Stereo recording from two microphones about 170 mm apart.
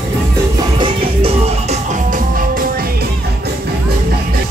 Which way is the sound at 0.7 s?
30° right (ahead or behind).